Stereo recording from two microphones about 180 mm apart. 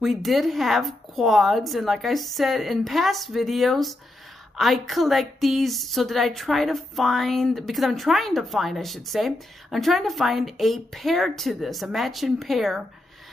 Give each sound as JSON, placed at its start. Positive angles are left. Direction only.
{"t": 0.0, "sound": "a woman's voice", "side_deg": 0}